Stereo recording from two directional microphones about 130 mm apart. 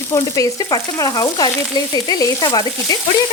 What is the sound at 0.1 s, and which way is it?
Frying, 25° left (ahead or behind).